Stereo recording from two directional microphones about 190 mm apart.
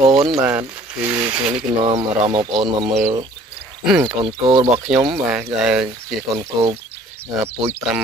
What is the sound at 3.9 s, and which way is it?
Speech, 20° right (ahead or behind).